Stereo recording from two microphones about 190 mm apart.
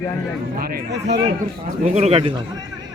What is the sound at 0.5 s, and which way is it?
Speech, 55° right (ahead or behind).